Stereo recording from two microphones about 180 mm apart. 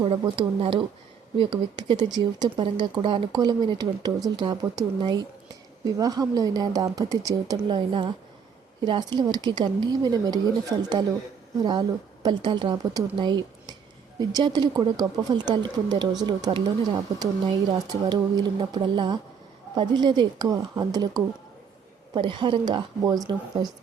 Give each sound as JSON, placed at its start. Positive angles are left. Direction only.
{"t": 0.0, "sound": "speech", "side_deg": -30}
{"t": 11.6, "sound": "speech", "side_deg": -25}